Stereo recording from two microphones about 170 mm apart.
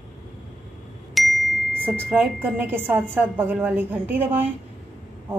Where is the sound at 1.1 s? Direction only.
Centre (ahead or behind).